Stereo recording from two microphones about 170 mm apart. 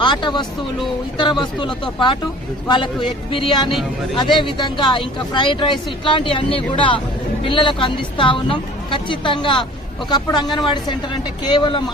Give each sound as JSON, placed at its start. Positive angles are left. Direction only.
{"t": 0.0, "sound": "speech", "side_deg": 25}
{"t": 11.4, "sound": "speech", "side_deg": 25}